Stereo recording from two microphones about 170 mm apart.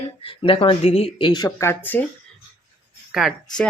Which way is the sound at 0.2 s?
30° left (ahead or behind).